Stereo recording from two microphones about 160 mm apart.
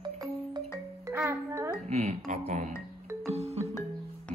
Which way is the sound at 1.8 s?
40° right (ahead or behind).